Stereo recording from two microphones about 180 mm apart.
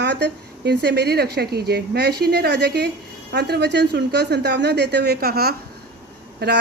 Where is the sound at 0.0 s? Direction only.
70° right (ahead or behind).